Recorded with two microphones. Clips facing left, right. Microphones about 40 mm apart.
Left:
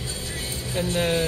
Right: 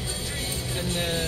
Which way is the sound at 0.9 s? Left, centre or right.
Left.